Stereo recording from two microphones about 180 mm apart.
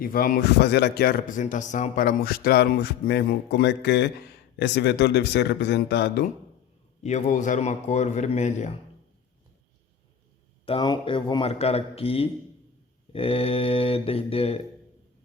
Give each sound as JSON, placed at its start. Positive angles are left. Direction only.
{"t": 0.0, "sound": "speech", "side_deg": 55}
{"t": 1.4, "sound": "speech", "side_deg": 45}
{"t": 7.0, "sound": "a man's voice", "side_deg": 40}
{"t": 10.7, "sound": "a man's voice", "side_deg": 25}